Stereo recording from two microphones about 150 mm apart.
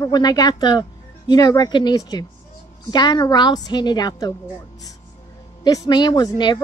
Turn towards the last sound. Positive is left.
turn(degrees=30)  # may be behind; listen again after turning